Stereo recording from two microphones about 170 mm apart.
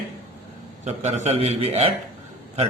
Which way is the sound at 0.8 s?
40° right (ahead or behind).